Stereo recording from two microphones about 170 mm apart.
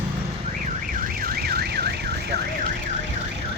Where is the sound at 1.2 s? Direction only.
65° right (ahead or behind).